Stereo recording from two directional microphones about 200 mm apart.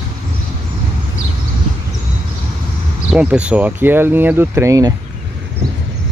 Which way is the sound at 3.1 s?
5° right (ahead or behind).